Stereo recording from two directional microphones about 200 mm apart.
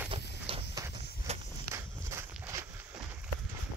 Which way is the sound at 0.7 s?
15° right (ahead or behind).